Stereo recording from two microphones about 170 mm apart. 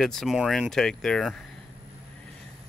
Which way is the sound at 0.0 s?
Centre (ahead or behind).